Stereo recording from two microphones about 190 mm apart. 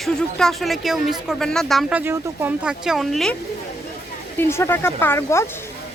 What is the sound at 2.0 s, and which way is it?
Speech, 10° right (ahead or behind).